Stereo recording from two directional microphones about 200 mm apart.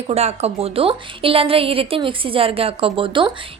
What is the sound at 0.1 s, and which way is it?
A woman's voice, 30° right (ahead or behind).